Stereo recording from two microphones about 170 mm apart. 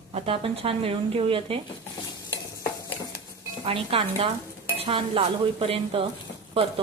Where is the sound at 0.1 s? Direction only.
35° right (ahead or behind).